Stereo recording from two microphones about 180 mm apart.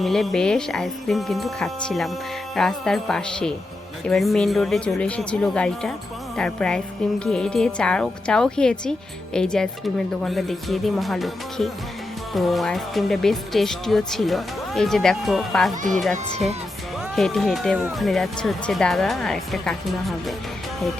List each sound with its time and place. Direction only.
0.0 s speech: centre (ahead or behind)
17.2 s speech: centre (ahead or behind)